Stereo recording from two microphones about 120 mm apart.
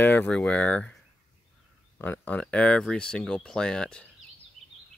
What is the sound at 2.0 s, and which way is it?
Speech, 15° left (ahead or behind).